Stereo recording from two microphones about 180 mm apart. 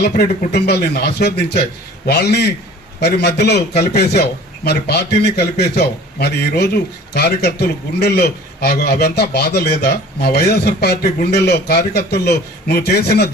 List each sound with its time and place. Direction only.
0.0 s a man's voice: 60° left (ahead or behind)